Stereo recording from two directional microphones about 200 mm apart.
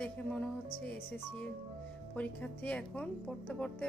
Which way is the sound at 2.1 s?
10° left (ahead or behind).